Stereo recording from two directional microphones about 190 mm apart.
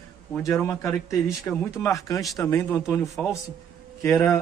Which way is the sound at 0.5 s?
10° left (ahead or behind).